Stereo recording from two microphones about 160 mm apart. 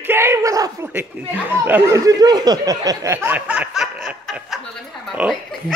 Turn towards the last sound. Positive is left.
turn(degrees=-5)  # may be behind; listen again after turning